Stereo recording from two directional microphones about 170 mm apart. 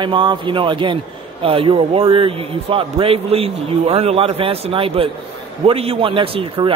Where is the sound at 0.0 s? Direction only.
30° right (ahead or behind).